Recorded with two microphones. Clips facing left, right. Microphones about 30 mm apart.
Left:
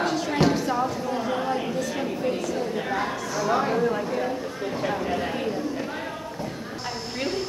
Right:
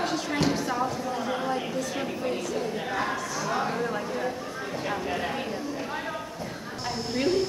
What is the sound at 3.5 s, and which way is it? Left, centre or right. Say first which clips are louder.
Speech: left 5 dB; centre.